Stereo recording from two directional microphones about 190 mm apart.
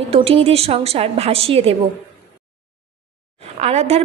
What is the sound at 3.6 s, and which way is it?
Speech, 35° right (ahead or behind).